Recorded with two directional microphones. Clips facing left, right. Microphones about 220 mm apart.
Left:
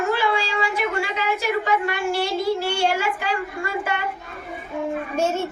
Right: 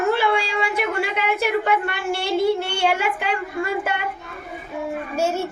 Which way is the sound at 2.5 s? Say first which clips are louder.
Even; 60° right (ahead or behind).